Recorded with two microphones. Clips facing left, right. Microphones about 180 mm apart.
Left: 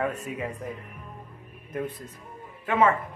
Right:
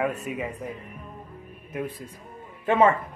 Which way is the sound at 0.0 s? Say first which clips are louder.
Right 2 dB; 5° right (ahead or behind).